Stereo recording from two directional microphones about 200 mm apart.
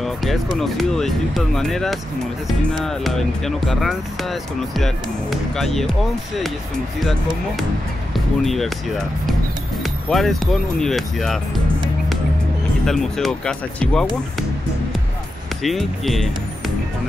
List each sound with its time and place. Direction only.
0.0 s speech: centre (ahead or behind)
7.0 s speech: centre (ahead or behind)
9.8 s music: centre (ahead or behind)
10.4 s speech: centre (ahead or behind)
12.8 s speech: centre (ahead or behind)
15.6 s speech: centre (ahead or behind)